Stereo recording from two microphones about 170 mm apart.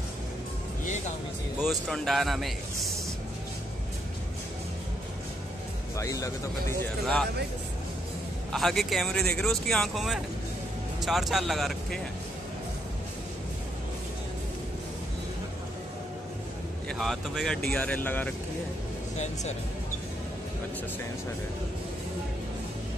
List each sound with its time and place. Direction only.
0.8 s music: 45° left (ahead or behind)
1.6 s speech: centre (ahead or behind)
5.9 s speech: 20° left (ahead or behind)
8.5 s speech: centre (ahead or behind)
17.0 s speech: centre (ahead or behind)